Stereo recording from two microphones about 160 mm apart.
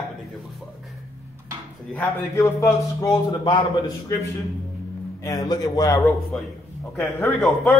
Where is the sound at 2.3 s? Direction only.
20° left (ahead or behind).